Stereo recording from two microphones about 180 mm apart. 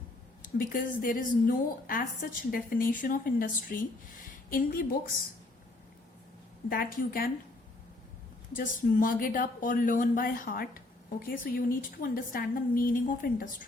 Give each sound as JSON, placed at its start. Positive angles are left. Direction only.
{"t": 0.4, "sound": "a woman's voice", "side_deg": 50}
{"t": 6.7, "sound": "a woman's voice", "side_deg": 55}
{"t": 8.5, "sound": "speech", "side_deg": 50}